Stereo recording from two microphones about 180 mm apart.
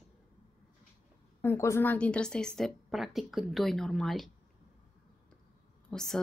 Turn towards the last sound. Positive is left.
turn(degrees=0)  # may be behind; listen again after turning